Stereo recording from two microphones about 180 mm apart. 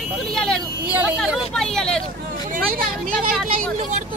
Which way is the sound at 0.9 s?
5° right (ahead or behind).